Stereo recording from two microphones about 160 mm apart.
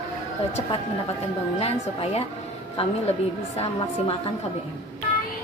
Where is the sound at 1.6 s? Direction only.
40° left (ahead or behind).